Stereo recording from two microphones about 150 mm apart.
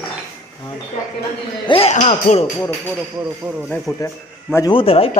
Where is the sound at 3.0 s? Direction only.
10° right (ahead or behind).